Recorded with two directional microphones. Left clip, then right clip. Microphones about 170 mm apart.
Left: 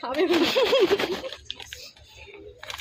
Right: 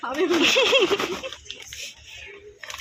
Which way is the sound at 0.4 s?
20° left (ahead or behind).